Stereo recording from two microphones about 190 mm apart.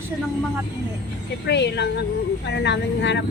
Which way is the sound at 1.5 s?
65° left (ahead or behind).